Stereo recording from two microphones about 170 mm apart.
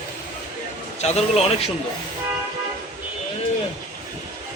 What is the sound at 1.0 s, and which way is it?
Speech, 40° left (ahead or behind).